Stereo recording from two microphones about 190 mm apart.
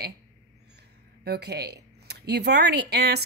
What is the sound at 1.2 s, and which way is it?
A woman's voice, 60° right (ahead or behind).